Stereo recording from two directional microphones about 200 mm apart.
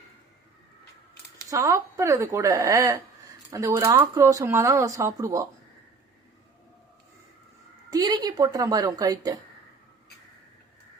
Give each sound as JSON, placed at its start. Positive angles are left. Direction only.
{"t": 1.5, "sound": "speech", "side_deg": -15}
{"t": 7.9, "sound": "speech", "side_deg": -20}